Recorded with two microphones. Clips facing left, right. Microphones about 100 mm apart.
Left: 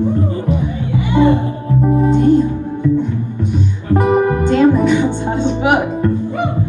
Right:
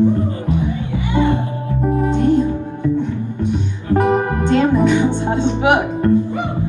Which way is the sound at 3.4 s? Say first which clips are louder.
Left 1 dB; centre (ahead or behind).